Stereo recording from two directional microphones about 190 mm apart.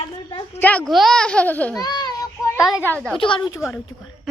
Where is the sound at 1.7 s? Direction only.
20° left (ahead or behind).